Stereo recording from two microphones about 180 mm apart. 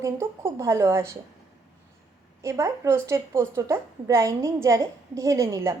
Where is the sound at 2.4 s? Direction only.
15° right (ahead or behind).